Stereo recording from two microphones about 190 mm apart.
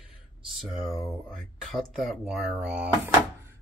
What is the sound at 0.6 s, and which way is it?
Speech, centre (ahead or behind).